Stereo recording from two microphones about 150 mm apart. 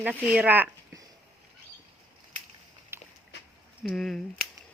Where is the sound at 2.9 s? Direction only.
15° right (ahead or behind).